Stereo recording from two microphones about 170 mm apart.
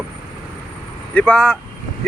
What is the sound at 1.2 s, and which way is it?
Speech, 5° left (ahead or behind).